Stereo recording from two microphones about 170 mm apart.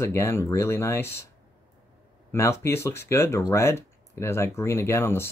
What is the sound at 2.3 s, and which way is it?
Speech, 15° left (ahead or behind).